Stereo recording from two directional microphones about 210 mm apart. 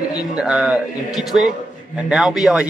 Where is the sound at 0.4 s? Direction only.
5° right (ahead or behind).